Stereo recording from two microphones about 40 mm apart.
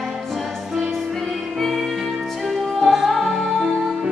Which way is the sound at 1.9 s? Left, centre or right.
Centre.